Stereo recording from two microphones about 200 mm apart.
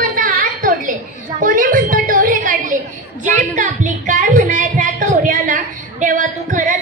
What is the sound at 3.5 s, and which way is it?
Music, 40° right (ahead or behind).